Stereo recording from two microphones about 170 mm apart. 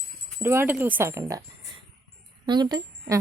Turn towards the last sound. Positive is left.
turn(degrees=-25)  # may be behind; listen again after turning